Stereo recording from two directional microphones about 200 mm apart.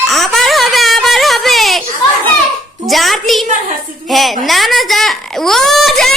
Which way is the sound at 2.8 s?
Centre (ahead or behind).